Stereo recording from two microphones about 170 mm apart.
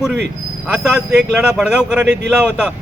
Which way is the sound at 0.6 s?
5° right (ahead or behind).